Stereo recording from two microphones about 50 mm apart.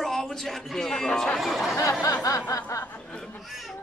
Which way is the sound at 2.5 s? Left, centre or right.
Left.